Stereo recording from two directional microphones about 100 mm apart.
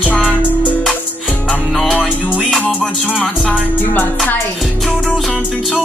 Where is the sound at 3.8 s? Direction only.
20° left (ahead or behind).